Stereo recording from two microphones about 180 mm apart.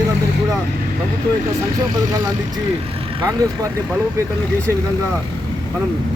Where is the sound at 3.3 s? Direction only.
20° right (ahead or behind).